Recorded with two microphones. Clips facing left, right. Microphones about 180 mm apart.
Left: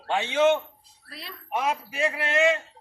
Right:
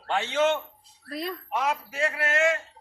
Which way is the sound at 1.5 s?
20° left (ahead or behind).